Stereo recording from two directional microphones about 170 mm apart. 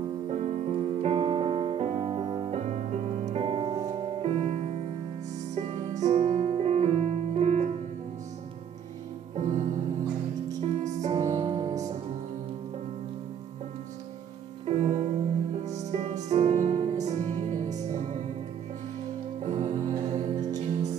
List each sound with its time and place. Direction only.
0.3 s music: 40° right (ahead or behind)
2.0 s music: 30° right (ahead or behind)
2.5 s music: 40° right (ahead or behind)
9.3 s music: 40° right (ahead or behind)
10.8 s music: 45° right (ahead or behind)
14.7 s music: 40° right (ahead or behind)
19.4 s music: 40° right (ahead or behind)